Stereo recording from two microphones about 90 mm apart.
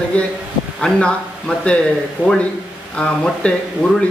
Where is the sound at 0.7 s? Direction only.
10° left (ahead or behind).